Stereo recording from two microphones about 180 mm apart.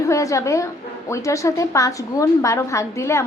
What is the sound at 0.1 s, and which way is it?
A woman's voice, 15° left (ahead or behind).